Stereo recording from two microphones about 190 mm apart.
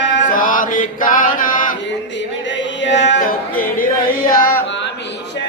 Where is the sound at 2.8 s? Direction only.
70° left (ahead or behind).